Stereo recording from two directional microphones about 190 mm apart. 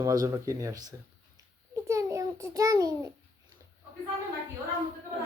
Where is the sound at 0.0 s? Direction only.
20° right (ahead or behind).